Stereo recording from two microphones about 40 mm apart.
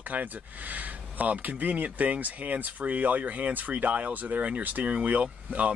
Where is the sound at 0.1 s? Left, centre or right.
Right.